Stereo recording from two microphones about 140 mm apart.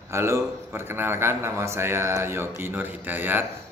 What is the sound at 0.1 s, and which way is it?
Speech, 20° right (ahead or behind).